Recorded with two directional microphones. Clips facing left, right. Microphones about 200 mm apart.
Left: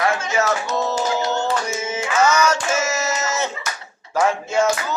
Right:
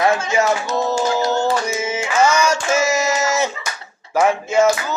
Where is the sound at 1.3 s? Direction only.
10° right (ahead or behind).